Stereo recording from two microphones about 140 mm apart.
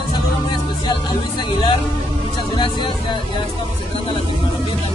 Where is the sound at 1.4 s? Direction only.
35° left (ahead or behind).